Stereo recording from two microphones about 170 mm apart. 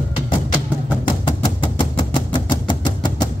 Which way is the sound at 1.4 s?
30° left (ahead or behind).